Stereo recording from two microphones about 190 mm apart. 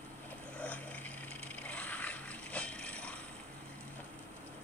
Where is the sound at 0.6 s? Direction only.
5° left (ahead or behind).